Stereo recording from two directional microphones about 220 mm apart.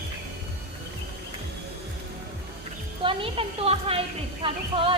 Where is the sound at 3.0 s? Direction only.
25° right (ahead or behind).